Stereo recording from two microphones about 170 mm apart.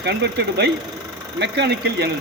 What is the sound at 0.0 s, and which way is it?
Speech, 75° right (ahead or behind).